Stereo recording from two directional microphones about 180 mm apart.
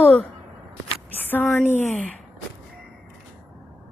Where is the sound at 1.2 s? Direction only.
10° left (ahead or behind).